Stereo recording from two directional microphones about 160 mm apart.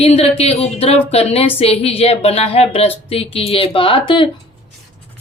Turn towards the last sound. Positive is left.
turn(degrees=30)  # may be behind; listen again after turning